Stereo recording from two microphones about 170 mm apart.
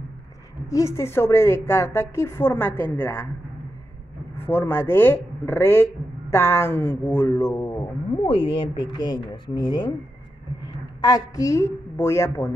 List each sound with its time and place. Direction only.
0.7 s a woman's voice: 15° left (ahead or behind)
4.5 s a woman's voice: 15° left (ahead or behind)
8.2 s speech: 30° left (ahead or behind)
10.6 s a woman's voice: 20° left (ahead or behind)